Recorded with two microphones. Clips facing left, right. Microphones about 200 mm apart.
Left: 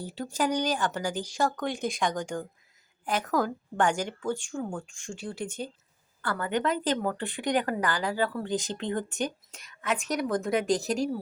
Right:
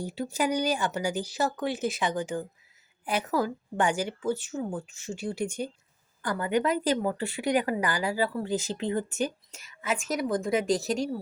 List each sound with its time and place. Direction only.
0.0 s a woman's voice: 10° right (ahead or behind)